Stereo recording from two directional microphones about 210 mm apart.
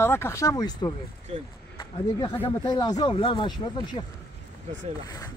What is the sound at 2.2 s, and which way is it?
Speech, 20° left (ahead or behind).